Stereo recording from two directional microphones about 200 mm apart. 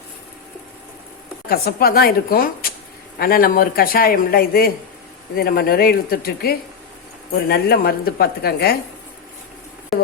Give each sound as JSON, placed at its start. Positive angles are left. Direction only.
{"t": 1.5, "sound": "speech", "side_deg": 50}